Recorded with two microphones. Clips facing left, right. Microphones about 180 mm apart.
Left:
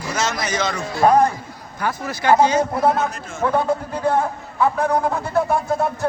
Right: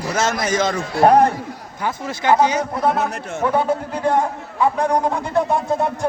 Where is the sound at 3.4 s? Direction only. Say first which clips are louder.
Even; 10° right (ahead or behind).